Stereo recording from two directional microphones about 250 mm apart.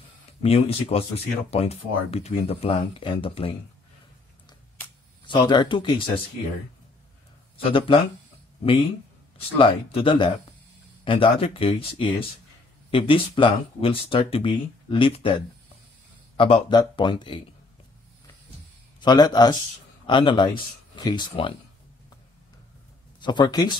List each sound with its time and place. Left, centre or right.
0.4 s speech: left
4.5 s a sound: centre
7.5 s a man's voice: left
9.6 s speech: centre
18.9 s speech: centre
23.2 s speech: centre